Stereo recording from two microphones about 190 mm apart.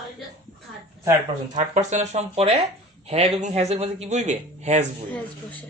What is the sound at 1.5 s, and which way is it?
Speech, 40° right (ahead or behind).